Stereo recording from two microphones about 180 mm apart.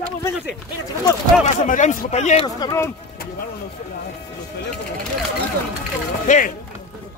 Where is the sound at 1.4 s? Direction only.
45° left (ahead or behind).